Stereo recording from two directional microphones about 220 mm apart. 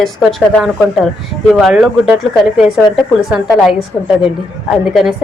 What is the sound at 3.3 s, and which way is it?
Speech, centre (ahead or behind).